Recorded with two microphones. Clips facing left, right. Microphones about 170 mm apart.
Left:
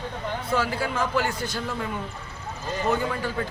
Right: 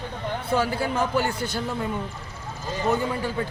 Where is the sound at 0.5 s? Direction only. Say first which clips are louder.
Right 2 dB; 30° right (ahead or behind).